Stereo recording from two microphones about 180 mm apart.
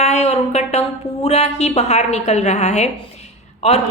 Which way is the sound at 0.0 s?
35° left (ahead or behind).